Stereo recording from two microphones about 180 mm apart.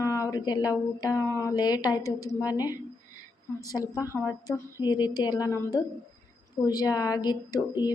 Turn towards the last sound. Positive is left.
turn(degrees=25)  # may be behind; listen again after turning